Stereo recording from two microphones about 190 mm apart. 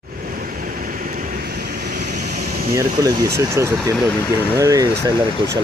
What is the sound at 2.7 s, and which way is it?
Speech, 20° right (ahead or behind).